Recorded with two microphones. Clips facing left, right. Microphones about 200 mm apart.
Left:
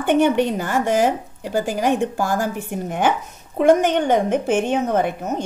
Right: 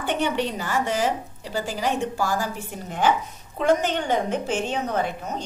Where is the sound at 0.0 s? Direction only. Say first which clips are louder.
Left 8 dB; 50° left (ahead or behind).